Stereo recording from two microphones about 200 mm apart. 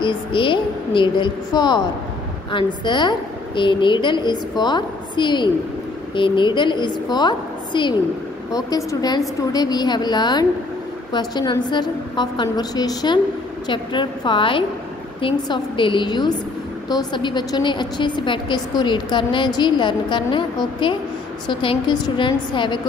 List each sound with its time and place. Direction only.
0.0 s a woman's voice: 25° left (ahead or behind)